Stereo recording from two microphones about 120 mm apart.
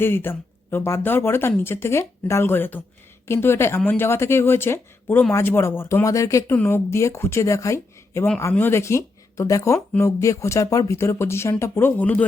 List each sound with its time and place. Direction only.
0.0 s speech: 20° left (ahead or behind)